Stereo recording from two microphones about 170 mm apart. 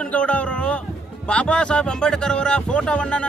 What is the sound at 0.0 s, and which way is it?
Speech, 5° left (ahead or behind).